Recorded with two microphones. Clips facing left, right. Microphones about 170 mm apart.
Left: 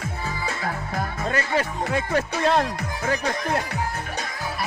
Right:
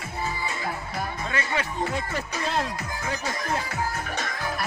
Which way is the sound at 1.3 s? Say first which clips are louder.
Left 6 dB; 40° left (ahead or behind).